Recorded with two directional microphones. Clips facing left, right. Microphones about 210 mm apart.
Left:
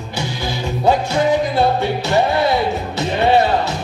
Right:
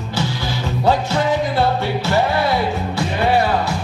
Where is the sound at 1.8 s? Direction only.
20° left (ahead or behind).